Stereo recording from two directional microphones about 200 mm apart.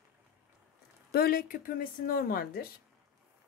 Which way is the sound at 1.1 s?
50° left (ahead or behind).